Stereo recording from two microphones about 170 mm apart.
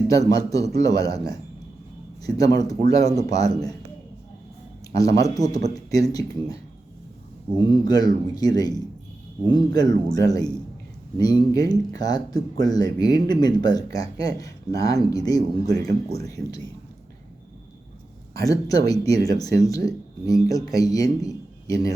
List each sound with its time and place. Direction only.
0.1 s speech: 20° left (ahead or behind)
3.1 s speech: 40° right (ahead or behind)
3.4 s speech: 20° left (ahead or behind)
5.2 s speech: 20° left (ahead or behind)
7.6 s speech: 25° left (ahead or behind)
18.3 s speech: 20° left (ahead or behind)